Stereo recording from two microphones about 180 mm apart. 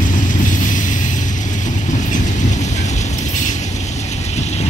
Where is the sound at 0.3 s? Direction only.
45° left (ahead or behind).